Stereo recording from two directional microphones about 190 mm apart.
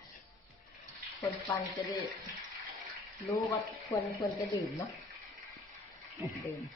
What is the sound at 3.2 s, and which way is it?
Speech, 15° left (ahead or behind).